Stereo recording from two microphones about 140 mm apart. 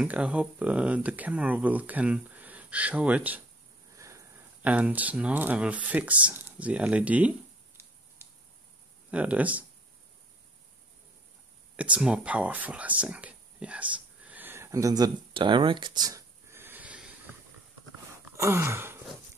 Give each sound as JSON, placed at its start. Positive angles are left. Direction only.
{"t": 0.0, "sound": "speech", "side_deg": -10}
{"t": 3.9, "sound": "a sound", "side_deg": -20}
{"t": 4.6, "sound": "speech", "side_deg": -10}
{"t": 11.7, "sound": "speech", "side_deg": -10}
{"t": 15.3, "sound": "a sound", "side_deg": -35}
{"t": 18.2, "sound": "wail", "side_deg": -20}